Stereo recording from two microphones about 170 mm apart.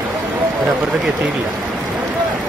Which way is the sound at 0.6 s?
5° right (ahead or behind).